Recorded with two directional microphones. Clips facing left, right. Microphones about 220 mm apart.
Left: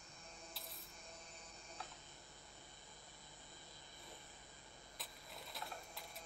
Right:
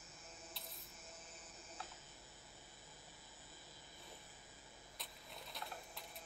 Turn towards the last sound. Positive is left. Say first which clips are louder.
# even
turn(degrees=0)  # may be behind; listen again after turning